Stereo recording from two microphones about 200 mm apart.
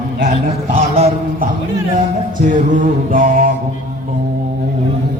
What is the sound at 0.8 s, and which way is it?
Speech, 35° right (ahead or behind).